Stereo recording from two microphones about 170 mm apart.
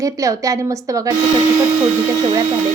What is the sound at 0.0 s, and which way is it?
A woman's voice, 20° right (ahead or behind).